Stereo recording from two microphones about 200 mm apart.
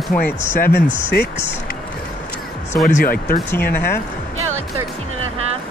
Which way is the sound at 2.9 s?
45° left (ahead or behind).